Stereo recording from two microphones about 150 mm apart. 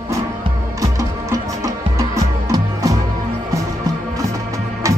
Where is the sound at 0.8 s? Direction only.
20° right (ahead or behind).